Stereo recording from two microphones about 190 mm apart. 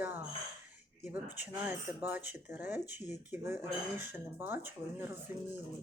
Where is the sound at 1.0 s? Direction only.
10° right (ahead or behind).